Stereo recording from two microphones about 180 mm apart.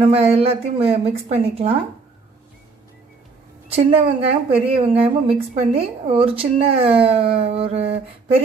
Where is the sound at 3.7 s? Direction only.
30° right (ahead or behind).